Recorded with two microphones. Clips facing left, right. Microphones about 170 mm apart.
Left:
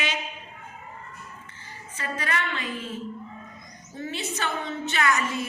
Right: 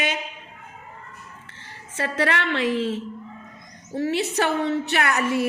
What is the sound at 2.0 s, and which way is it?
A woman's voice, 75° right (ahead or behind).